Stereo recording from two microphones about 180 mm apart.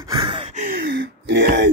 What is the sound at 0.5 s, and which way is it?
Gasp, 50° right (ahead or behind).